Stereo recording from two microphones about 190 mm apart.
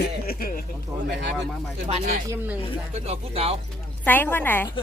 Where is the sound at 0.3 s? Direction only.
50° left (ahead or behind).